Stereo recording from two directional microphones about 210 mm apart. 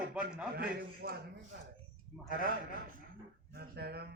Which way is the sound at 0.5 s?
50° right (ahead or behind).